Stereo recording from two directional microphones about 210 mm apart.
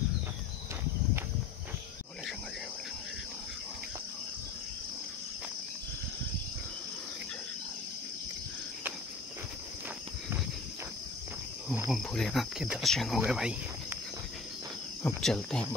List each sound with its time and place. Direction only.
11.9 s cricket: centre (ahead or behind)
15.0 s cricket: 5° left (ahead or behind)